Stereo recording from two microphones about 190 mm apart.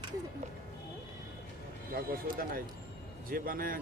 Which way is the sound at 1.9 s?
50° right (ahead or behind).